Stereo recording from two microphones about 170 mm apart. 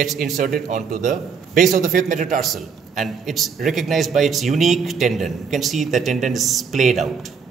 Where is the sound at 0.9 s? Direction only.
55° right (ahead or behind).